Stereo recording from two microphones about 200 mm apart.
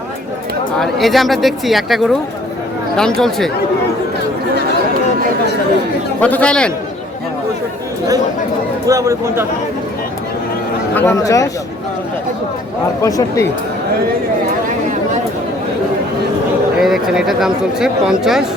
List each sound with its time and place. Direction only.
0.8 s speech: centre (ahead or behind)
6.1 s speech: 10° left (ahead or behind)
8.9 s speech: 15° right (ahead or behind)
10.9 s speech: 10° left (ahead or behind)
13.0 s speech: 15° left (ahead or behind)
16.7 s speech: centre (ahead or behind)